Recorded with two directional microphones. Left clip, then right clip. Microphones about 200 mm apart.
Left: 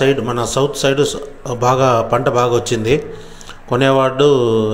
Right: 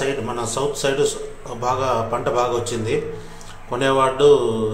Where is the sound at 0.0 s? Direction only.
35° left (ahead or behind).